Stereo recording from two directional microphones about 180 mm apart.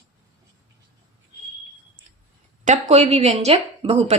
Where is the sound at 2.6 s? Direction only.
40° right (ahead or behind).